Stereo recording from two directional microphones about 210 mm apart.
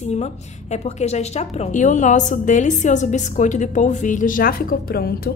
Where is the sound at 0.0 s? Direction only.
30° left (ahead or behind).